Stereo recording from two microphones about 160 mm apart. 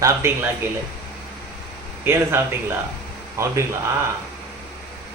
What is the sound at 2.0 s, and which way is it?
Speech, 15° right (ahead or behind).